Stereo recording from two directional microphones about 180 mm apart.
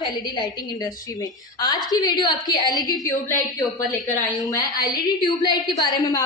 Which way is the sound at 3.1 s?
50° left (ahead or behind).